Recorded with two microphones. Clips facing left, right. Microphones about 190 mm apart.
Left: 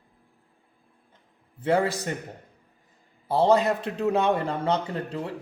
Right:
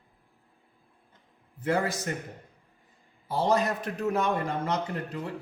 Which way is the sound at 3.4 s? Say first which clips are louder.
Left 5 dB; 30° left (ahead or behind).